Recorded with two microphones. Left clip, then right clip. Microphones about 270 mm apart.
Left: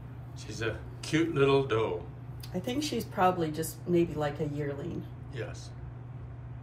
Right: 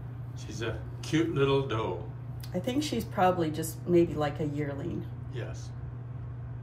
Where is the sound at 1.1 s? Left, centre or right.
Centre.